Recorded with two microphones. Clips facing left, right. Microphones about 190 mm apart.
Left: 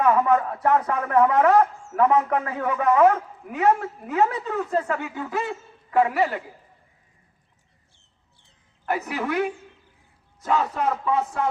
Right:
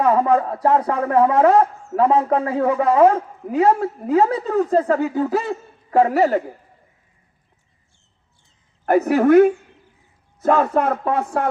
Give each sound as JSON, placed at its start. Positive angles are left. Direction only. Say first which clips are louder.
{"t": 0.0, "sound": "a man's voice", "louder": "right 3 dB", "side_deg": -35}
{"t": 8.9, "sound": "speech", "louder": "right 13 dB", "side_deg": -50}